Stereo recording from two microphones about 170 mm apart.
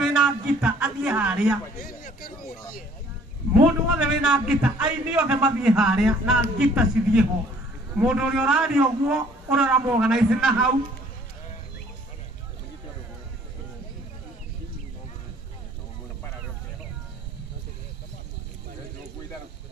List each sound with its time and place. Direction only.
0.0 s speech: centre (ahead or behind)
1.8 s speech: 55° left (ahead or behind)
3.5 s a man's voice: 5° right (ahead or behind)